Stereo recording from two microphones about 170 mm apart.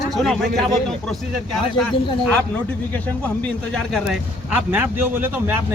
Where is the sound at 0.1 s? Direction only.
Centre (ahead or behind).